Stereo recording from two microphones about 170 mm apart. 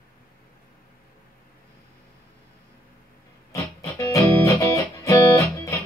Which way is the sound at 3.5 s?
20° left (ahead or behind).